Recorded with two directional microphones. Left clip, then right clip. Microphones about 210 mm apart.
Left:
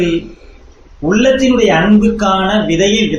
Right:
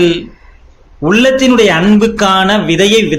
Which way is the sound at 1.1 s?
45° right (ahead or behind).